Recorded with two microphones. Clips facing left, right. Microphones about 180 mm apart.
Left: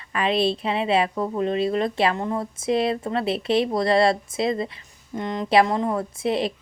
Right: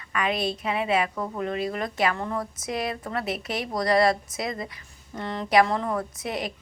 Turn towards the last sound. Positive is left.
turn(degrees=25)  # may be behind; listen again after turning